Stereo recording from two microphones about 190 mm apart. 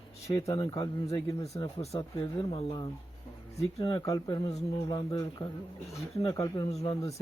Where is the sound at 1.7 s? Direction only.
35° left (ahead or behind).